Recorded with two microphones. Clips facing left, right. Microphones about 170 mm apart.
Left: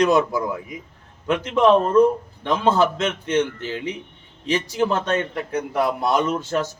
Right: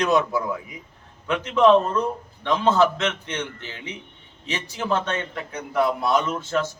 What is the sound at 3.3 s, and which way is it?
A man's voice, 40° left (ahead or behind).